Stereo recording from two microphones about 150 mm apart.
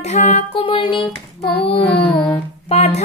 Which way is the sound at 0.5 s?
35° left (ahead or behind).